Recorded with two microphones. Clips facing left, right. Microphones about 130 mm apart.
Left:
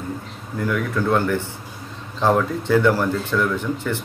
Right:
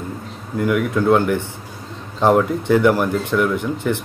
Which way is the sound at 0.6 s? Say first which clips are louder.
Right 4 dB; 15° right (ahead or behind).